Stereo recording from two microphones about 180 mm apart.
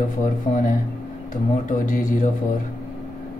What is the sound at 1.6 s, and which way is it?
Speech, 50° left (ahead or behind).